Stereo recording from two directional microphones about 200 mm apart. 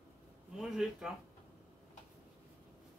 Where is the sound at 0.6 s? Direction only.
Centre (ahead or behind).